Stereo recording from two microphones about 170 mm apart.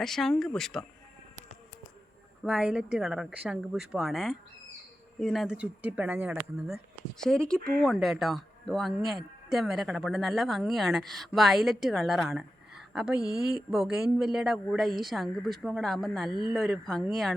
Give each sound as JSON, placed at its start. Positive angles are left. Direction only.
{"t": 0.0, "sound": "speech", "side_deg": 0}
{"t": 2.4, "sound": "speech", "side_deg": -5}
{"t": 7.3, "sound": "speech", "side_deg": 5}
{"t": 16.3, "sound": "speech", "side_deg": 30}
{"t": 16.8, "sound": "speech", "side_deg": 0}